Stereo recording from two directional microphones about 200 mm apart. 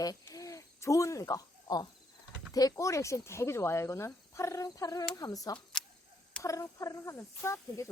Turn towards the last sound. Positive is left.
turn(degrees=15)  # may be behind; listen again after turning